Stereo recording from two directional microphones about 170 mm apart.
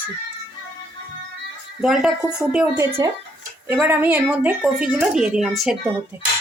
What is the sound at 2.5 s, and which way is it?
Speech, 15° right (ahead or behind).